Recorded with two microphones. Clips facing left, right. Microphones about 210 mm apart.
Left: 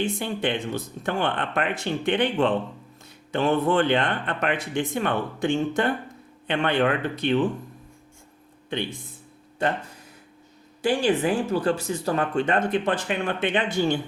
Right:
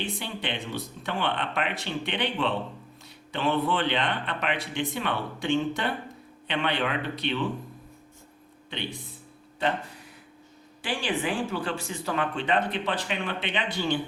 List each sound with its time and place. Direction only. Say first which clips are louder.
0.0 s speech: left 7 dB; 50° left (ahead or behind)
10.8 s speech: left 8 dB; 40° left (ahead or behind)